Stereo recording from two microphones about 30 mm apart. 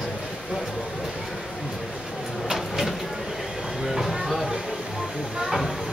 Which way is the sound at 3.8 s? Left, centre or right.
Centre.